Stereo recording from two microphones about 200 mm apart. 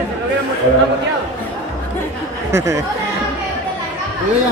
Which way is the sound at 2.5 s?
15° right (ahead or behind).